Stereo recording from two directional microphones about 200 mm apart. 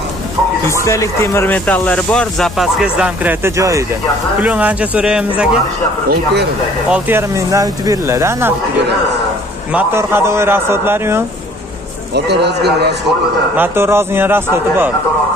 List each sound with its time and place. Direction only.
0.7 s speech: 15° left (ahead or behind); by 5.5 s 5° right (ahead or behind)
6.9 s speech: 10° right (ahead or behind)
9.7 s speech: 10° right (ahead or behind)
12.1 s a man's voice: 55° right (ahead or behind)
13.6 s speech: 10° right (ahead or behind)